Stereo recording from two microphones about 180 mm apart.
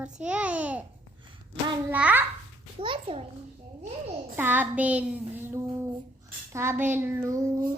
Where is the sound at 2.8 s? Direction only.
30° right (ahead or behind).